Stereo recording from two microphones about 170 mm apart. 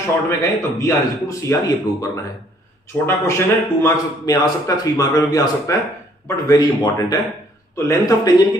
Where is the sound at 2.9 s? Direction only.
15° left (ahead or behind).